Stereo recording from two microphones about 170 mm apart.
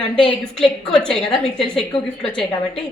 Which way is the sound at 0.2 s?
5° left (ahead or behind).